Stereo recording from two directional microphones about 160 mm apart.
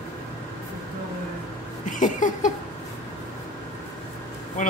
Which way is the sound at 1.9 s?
55° left (ahead or behind).